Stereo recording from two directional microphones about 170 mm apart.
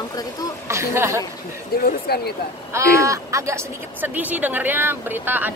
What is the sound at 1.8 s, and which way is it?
Speech, 70° left (ahead or behind).